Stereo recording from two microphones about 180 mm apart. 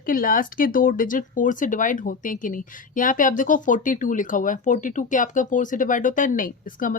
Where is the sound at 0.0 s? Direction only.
50° left (ahead or behind).